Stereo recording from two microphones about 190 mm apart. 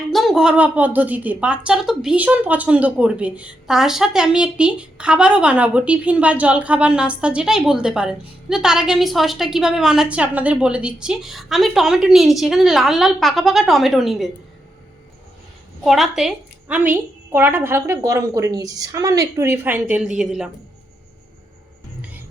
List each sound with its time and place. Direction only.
0.1 s a woman's voice: centre (ahead or behind)
15.8 s a woman's voice: centre (ahead or behind)